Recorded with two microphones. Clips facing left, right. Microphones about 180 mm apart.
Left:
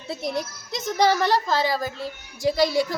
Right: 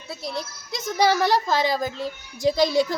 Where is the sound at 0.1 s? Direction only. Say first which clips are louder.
Left 4 dB; 20° left (ahead or behind).